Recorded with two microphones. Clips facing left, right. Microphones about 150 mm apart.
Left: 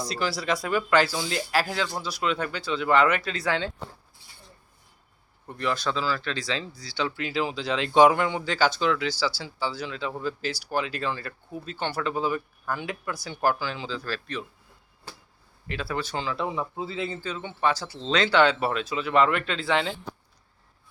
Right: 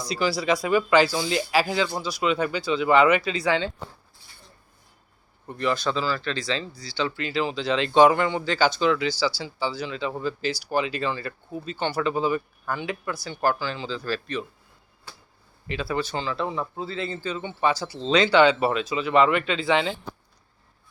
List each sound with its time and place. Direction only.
0.1 s speech: centre (ahead or behind)
5.5 s speech: centre (ahead or behind)
15.6 s speech: centre (ahead or behind)
17.3 s speech: centre (ahead or behind)